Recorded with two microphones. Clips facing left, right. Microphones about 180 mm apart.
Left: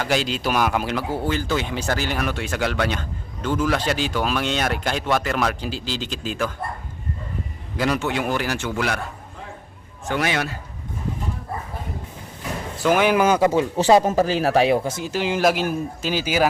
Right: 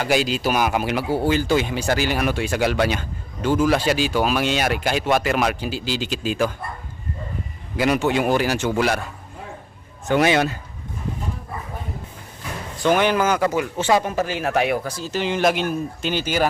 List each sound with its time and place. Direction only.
0.0 s speech: 10° right (ahead or behind)
7.9 s speech: 15° right (ahead or behind)
10.1 s a man's voice: 20° right (ahead or behind)
12.8 s speech: 5° left (ahead or behind)
13.1 s speech: 15° left (ahead or behind)
13.5 s speech: 30° left (ahead or behind)
15.1 s speech: 5° left (ahead or behind)